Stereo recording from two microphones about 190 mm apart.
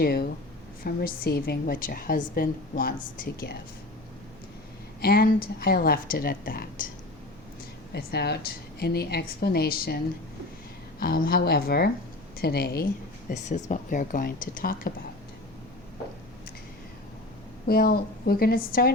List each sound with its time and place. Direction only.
0.0 s a woman's voice: 55° left (ahead or behind)
4.9 s a woman's voice: 55° left (ahead or behind)
7.9 s a woman's voice: 60° left (ahead or behind)
11.0 s a woman's voice: 50° left (ahead or behind)
13.3 s a woman's voice: 40° left (ahead or behind)
17.7 s a woman's voice: 55° left (ahead or behind)